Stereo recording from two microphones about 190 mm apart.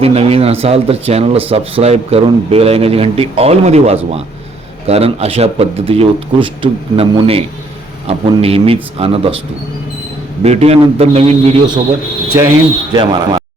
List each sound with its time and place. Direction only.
0.0 s speech: 30° right (ahead or behind)
10.4 s speech: 35° right (ahead or behind)
12.3 s speech: 15° right (ahead or behind)